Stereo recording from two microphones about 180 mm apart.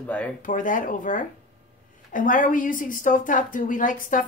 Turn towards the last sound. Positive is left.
turn(degrees=50)  # may be behind; listen again after turning